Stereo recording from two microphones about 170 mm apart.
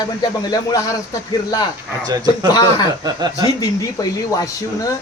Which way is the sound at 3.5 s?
20° left (ahead or behind).